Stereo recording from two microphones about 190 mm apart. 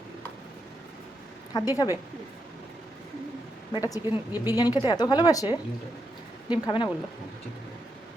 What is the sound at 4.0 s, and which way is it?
Speech, 10° right (ahead or behind).